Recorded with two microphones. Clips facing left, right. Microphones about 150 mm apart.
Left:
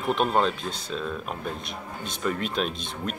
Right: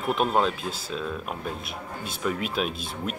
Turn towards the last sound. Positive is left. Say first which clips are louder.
# even
turn(degrees=-5)  # may be behind; listen again after turning